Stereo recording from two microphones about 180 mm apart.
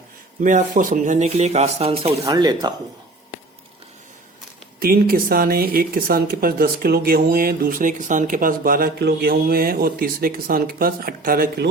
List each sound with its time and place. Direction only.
0.4 s speech: 45° right (ahead or behind); by 2.7 s 25° right (ahead or behind)
4.8 s speech: 55° right (ahead or behind)